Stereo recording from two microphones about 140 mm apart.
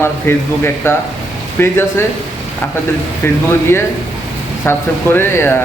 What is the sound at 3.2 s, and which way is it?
Speech, 15° left (ahead or behind).